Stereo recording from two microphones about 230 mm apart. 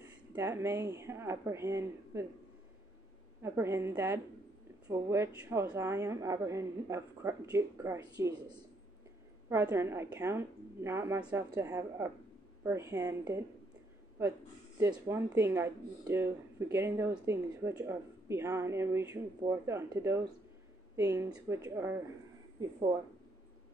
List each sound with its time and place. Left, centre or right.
0.3 s speech: centre
3.4 s speech: centre
14.8 s speech: centre